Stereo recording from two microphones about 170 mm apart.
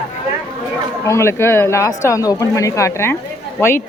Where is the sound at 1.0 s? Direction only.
15° left (ahead or behind).